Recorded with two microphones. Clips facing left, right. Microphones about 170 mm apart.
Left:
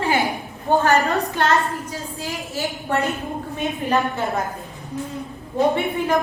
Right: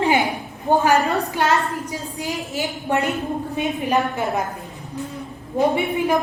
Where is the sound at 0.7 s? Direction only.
15° right (ahead or behind).